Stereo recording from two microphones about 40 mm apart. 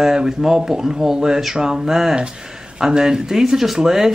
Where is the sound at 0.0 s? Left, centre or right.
Centre.